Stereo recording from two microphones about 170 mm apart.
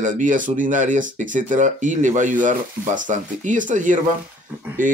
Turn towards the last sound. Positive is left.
turn(degrees=-50)  # may be behind; listen again after turning